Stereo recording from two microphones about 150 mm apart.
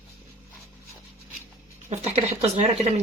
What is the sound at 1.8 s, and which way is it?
Speech, 45° right (ahead or behind).